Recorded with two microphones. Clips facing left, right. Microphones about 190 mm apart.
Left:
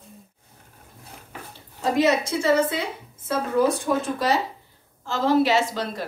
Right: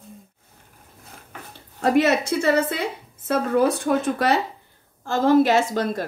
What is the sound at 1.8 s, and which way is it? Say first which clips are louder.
A woman's voice: right 2 dB; 60° right (ahead or behind).